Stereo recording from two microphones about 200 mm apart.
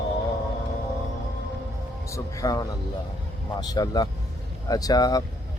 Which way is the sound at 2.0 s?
15° left (ahead or behind).